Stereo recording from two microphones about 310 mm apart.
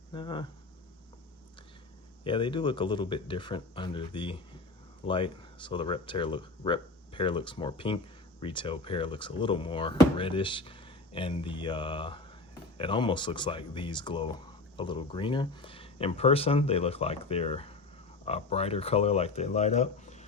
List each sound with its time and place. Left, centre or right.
0.1 s speech: centre
2.2 s speech: centre